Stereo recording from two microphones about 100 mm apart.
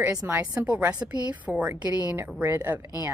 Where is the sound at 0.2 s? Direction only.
25° right (ahead or behind).